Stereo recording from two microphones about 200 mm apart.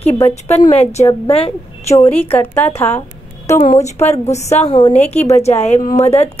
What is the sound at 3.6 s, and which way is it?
A woman's voice, 35° left (ahead or behind).